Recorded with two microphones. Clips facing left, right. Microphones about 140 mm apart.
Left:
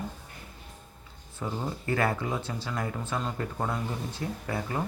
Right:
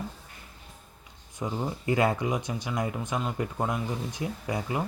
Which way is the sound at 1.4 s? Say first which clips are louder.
Right 2 dB; 15° right (ahead or behind).